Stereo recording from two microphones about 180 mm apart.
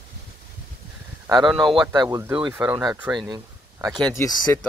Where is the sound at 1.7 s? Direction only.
25° right (ahead or behind); by 3.3 s 5° right (ahead or behind).